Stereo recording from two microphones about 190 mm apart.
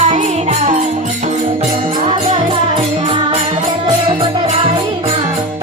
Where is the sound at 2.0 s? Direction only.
30° right (ahead or behind).